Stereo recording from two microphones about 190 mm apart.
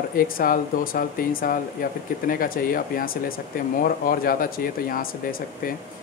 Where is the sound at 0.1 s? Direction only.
50° left (ahead or behind).